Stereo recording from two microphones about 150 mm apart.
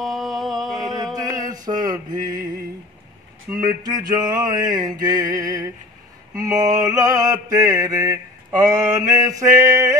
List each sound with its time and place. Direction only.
0.0 s a sound: centre (ahead or behind)
1.1 s mantra: 25° right (ahead or behind)
3.6 s mantra: 25° right (ahead or behind)